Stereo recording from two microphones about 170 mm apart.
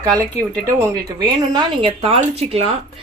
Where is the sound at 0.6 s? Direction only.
20° right (ahead or behind); by 2.7 s 40° right (ahead or behind).